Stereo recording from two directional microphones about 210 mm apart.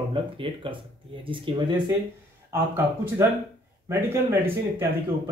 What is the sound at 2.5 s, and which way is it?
Speech, 10° right (ahead or behind).